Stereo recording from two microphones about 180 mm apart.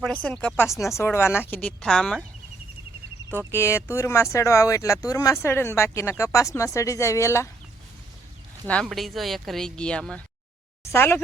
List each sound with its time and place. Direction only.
0.0 s speech: 5° left (ahead or behind)
3.5 s speech: 15° left (ahead or behind)
8.6 s speech: 5° left (ahead or behind)